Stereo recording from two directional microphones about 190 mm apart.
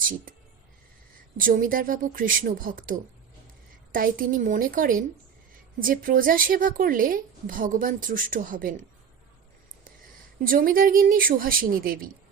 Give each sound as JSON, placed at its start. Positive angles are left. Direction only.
{"t": 1.4, "sound": "a woman's voice", "side_deg": -45}
{"t": 10.4, "sound": "a woman's voice", "side_deg": -50}